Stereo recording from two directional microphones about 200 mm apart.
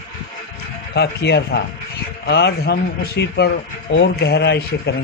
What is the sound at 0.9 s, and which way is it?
Speech, 55° left (ahead or behind).